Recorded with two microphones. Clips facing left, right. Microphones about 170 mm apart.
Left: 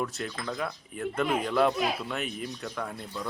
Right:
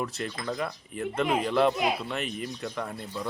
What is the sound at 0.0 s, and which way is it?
A man's voice, centre (ahead or behind).